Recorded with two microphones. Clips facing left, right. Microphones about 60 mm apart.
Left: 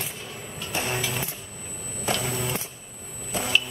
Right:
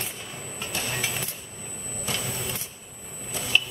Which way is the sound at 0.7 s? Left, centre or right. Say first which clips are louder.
Left 4 dB; left.